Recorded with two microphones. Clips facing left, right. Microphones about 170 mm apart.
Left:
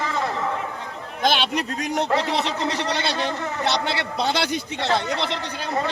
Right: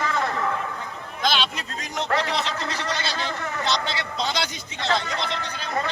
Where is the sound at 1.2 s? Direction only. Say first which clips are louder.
Left 4 dB; 60° left (ahead or behind).